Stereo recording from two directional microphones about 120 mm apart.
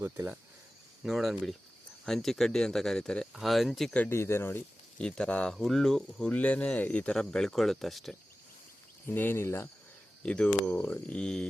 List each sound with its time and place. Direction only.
0.0 s speech: 20° right (ahead or behind)
1.0 s speech: centre (ahead or behind)
4.1 s speech: 20° left (ahead or behind)
5.0 s speech: 5° left (ahead or behind)
9.0 s speech: 15° left (ahead or behind)
10.2 s speech: 10° left (ahead or behind)